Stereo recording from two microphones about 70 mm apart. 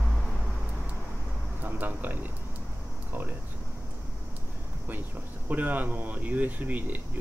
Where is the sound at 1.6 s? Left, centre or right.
Right.